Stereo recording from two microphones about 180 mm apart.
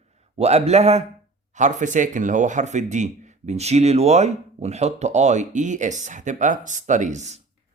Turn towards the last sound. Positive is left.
turn(degrees=-40)  # may be behind; listen again after turning